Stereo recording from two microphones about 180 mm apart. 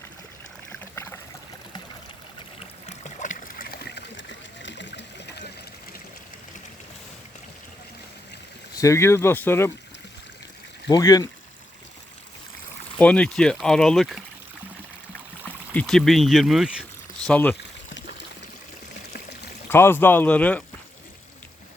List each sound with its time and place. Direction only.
0.7 s trickle: 15° left (ahead or behind)
2.8 s splash: 40° left (ahead or behind); by 5.4 s 70° left (ahead or behind)
8.7 s speech: 15° left (ahead or behind)
10.8 s speech: 20° left (ahead or behind)
13.0 s speech: 5° left (ahead or behind)
15.4 s speech: 10° left (ahead or behind)
17.2 s speech: 5° left (ahead or behind)
19.7 s speech: 15° left (ahead or behind)